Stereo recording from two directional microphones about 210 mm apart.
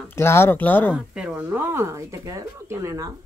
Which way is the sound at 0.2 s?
10° left (ahead or behind).